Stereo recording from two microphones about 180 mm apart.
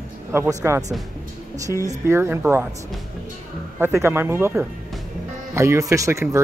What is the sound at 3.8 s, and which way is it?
Speech, 15° right (ahead or behind).